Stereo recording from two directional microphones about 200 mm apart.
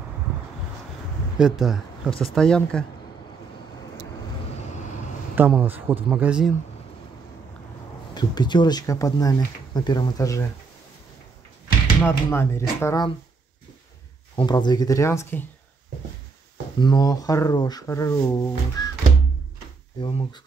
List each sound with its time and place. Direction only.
1.4 s speech: centre (ahead or behind)
5.3 s speech: 10° right (ahead or behind)
8.1 s speech: 20° left (ahead or behind)
12.0 s speech: 10° left (ahead or behind)
14.3 s speech: 20° left (ahead or behind)
16.8 s speech: 20° left (ahead or behind)
18.8 s music: 20° left (ahead or behind)
20.0 s speech: 25° left (ahead or behind)